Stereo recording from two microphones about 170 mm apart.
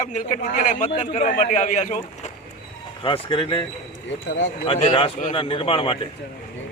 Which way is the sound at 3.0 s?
30° left (ahead or behind).